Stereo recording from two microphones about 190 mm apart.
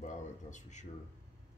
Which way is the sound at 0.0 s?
40° left (ahead or behind).